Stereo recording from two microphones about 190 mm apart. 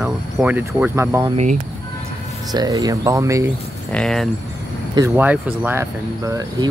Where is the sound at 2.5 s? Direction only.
20° right (ahead or behind).